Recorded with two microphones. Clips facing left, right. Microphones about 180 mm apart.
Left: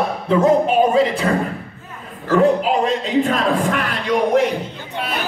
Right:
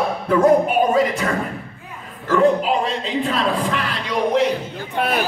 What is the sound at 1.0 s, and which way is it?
Speech, 30° left (ahead or behind).